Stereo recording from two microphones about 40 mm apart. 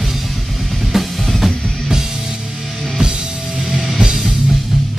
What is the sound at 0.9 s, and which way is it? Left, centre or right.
Music, centre.